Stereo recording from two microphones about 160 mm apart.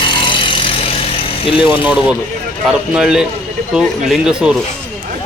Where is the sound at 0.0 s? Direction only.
30° left (ahead or behind).